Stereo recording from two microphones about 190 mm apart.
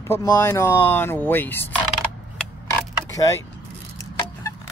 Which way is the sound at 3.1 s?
15° left (ahead or behind).